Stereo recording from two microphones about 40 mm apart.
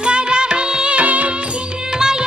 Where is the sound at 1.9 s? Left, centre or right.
Centre.